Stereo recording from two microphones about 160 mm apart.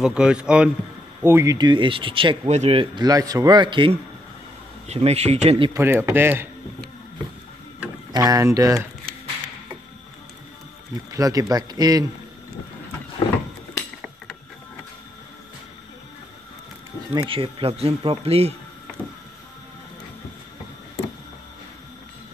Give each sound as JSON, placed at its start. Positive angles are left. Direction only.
{"t": 0.0, "sound": "speech", "side_deg": -5}
{"t": 1.2, "sound": "speech", "side_deg": -15}
{"t": 4.8, "sound": "speech", "side_deg": -40}
{"t": 5.7, "sound": "speech", "side_deg": -15}
{"t": 8.1, "sound": "speech", "side_deg": -20}
{"t": 11.1, "sound": "speech", "side_deg": -20}
{"t": 17.3, "sound": "speech", "side_deg": -35}